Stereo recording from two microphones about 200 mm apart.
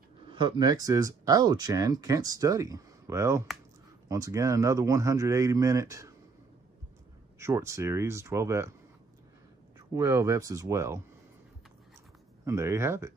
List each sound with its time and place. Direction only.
0.3 s speech: 25° right (ahead or behind)
7.3 s speech: 15° right (ahead or behind)
9.8 s speech: 15° right (ahead or behind)
12.4 s speech: 15° right (ahead or behind)